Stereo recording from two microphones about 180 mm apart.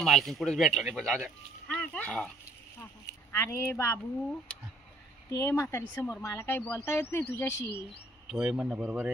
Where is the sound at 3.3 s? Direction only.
15° left (ahead or behind).